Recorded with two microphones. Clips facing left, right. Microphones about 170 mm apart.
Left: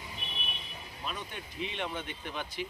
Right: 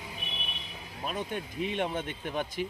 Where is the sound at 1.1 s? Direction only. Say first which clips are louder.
Right 7 dB; 50° right (ahead or behind).